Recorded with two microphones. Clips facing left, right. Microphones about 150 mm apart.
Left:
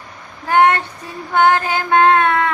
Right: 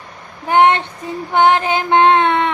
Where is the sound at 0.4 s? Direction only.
20° right (ahead or behind).